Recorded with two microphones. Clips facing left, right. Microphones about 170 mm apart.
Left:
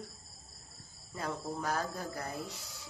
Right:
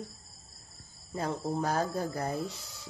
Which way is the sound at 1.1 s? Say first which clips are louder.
Right 6 dB; 30° right (ahead or behind).